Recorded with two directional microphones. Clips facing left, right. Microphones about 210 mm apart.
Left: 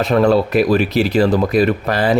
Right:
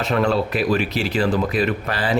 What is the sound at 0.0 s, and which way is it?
Speech, 40° left (ahead or behind).